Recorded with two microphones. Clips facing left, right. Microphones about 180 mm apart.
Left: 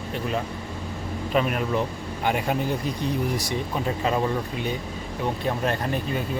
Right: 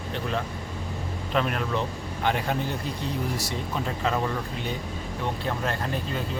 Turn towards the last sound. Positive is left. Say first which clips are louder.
# left 3 dB
turn(degrees=15)  # may be behind; listen again after turning